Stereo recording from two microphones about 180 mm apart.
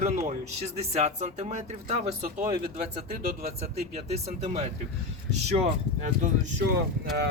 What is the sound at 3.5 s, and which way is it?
Speech, 35° right (ahead or behind).